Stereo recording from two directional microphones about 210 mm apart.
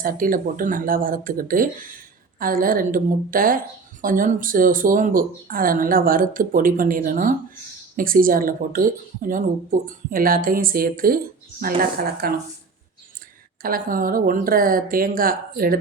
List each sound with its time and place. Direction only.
0.0 s speech: 40° right (ahead or behind)
13.6 s speech: 40° right (ahead or behind)